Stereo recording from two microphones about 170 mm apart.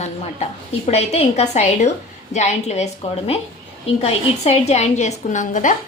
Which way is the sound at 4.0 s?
35° left (ahead or behind).